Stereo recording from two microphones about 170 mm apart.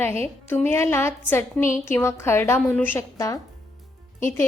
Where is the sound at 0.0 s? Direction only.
15° left (ahead or behind).